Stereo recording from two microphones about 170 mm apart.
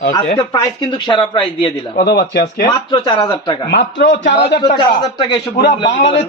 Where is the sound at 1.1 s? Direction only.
30° left (ahead or behind).